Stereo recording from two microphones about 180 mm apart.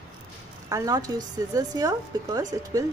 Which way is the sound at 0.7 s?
20° right (ahead or behind).